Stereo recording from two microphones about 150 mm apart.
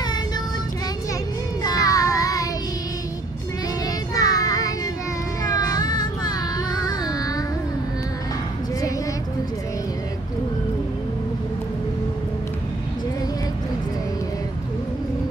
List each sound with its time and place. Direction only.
1.6 s child singing: 25° left (ahead or behind)
4.1 s child singing: 25° left (ahead or behind)
6.8 s music: 25° left (ahead or behind)